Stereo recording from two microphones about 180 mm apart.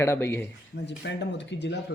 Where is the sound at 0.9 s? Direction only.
75° left (ahead or behind).